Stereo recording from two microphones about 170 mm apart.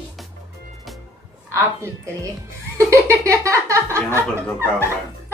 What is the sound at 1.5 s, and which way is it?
Speech, 15° right (ahead or behind).